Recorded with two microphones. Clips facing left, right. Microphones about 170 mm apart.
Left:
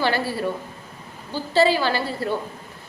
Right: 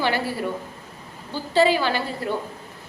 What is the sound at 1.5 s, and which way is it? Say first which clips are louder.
Speech: even; 35° left (ahead or behind).